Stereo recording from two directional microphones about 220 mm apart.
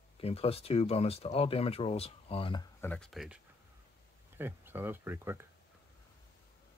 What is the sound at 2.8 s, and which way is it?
Speech, 5° left (ahead or behind).